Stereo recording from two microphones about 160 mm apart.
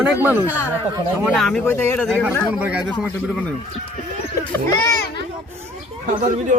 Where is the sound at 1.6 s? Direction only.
15° left (ahead or behind).